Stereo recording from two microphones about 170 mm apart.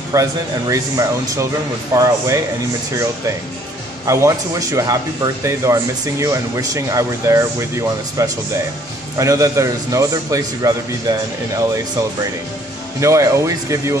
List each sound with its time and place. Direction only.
0.1 s speech: 20° right (ahead or behind)
4.0 s speech: 20° right (ahead or behind)
13.0 s speech: 20° right (ahead or behind)